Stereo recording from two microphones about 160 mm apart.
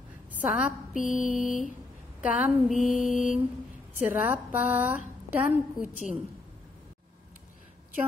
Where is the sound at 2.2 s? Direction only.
5° right (ahead or behind).